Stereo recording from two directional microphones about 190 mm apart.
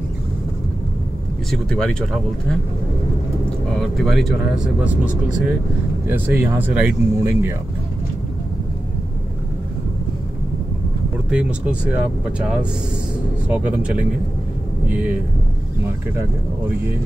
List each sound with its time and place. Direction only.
1.5 s speech: 5° left (ahead or behind)
3.7 s speech: centre (ahead or behind)
11.2 s speech: 5° right (ahead or behind)
16.2 s speech: 10° right (ahead or behind)